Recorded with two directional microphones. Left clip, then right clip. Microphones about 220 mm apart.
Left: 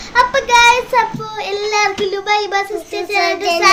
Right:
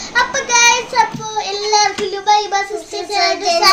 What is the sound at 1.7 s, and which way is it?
Child singing, 10° left (ahead or behind).